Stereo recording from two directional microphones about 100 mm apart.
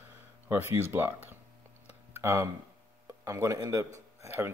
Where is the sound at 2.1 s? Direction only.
25° right (ahead or behind).